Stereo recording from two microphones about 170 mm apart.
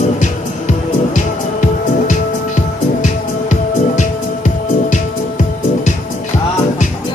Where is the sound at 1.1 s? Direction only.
45° left (ahead or behind).